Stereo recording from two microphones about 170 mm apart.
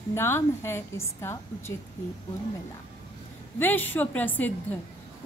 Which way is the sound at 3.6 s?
10° left (ahead or behind).